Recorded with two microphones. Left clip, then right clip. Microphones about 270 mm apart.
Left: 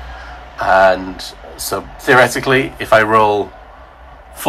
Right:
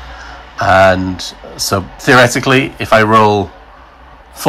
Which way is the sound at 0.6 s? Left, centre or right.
Right.